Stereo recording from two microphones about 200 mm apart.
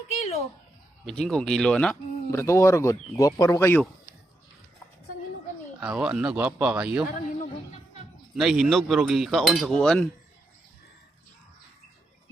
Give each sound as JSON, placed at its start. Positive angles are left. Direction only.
{"t": 0.1, "sound": "a sound", "side_deg": 30}
{"t": 1.0, "sound": "speech", "side_deg": 5}
{"t": 5.8, "sound": "speech", "side_deg": -5}
{"t": 8.4, "sound": "speech", "side_deg": 0}